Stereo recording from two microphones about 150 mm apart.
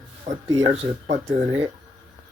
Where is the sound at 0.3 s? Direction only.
50° right (ahead or behind).